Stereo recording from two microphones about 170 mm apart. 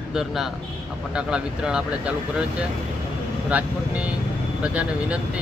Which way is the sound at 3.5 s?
5° right (ahead or behind).